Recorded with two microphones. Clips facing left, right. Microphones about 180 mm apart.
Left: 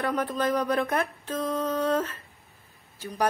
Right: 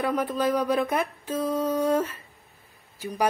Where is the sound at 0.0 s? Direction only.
10° right (ahead or behind).